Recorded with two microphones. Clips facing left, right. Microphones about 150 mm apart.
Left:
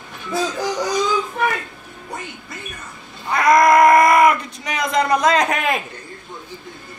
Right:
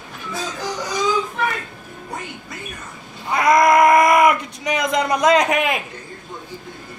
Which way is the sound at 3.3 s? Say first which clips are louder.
Left 1 dB; 20° right (ahead or behind).